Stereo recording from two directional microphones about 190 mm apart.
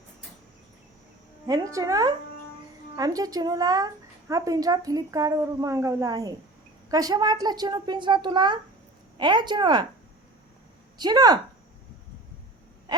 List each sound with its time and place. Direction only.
1.5 s a woman's voice: 20° right (ahead or behind)
10.9 s a woman's voice: 20° right (ahead or behind)